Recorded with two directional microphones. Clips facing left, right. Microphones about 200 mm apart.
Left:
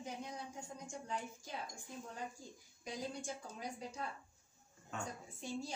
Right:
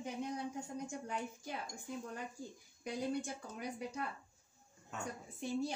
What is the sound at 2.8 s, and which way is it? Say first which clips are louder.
Speech: right 5 dB; 65° right (ahead or behind).